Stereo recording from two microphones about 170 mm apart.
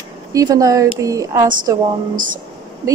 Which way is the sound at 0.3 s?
20° right (ahead or behind).